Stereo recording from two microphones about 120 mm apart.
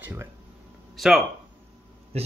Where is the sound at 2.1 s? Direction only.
60° right (ahead or behind).